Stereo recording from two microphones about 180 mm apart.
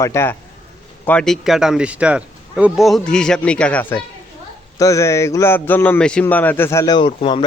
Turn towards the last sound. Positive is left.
turn(degrees=25)  # may be behind; listen again after turning